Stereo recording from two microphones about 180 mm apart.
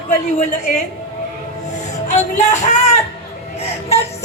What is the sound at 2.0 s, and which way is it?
Music, 40° left (ahead or behind).